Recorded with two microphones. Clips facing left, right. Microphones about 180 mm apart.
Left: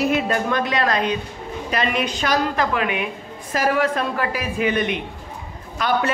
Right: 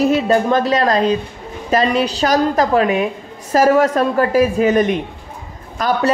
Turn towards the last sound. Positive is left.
turn(degrees=-40)  # may be behind; listen again after turning